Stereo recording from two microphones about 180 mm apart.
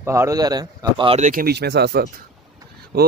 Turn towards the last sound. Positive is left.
turn(degrees=-60)  # may be behind; listen again after turning